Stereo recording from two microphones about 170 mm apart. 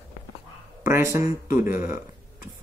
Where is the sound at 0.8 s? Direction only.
15° right (ahead or behind).